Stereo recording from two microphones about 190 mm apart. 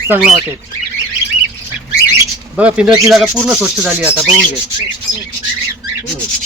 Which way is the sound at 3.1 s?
Centre (ahead or behind).